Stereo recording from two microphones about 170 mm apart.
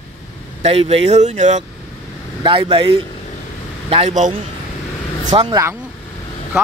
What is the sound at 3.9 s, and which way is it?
Speech, 40° right (ahead or behind).